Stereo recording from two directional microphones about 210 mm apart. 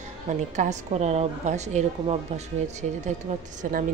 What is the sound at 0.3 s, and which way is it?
A woman's voice, 35° right (ahead or behind).